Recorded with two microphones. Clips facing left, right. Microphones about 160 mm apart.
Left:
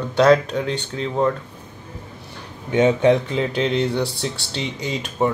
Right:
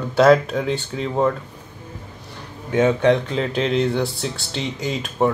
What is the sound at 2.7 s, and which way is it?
Speech, 20° left (ahead or behind).